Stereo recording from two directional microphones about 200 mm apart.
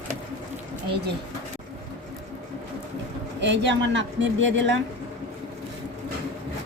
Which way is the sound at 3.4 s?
60° right (ahead or behind).